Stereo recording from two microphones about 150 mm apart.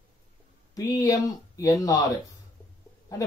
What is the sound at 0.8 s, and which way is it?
Speech, 25° left (ahead or behind).